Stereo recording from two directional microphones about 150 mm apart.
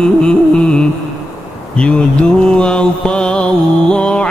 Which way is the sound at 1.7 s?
5° left (ahead or behind).